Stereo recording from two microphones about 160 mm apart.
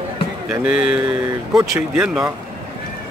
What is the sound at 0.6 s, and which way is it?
Speech, 5° right (ahead or behind).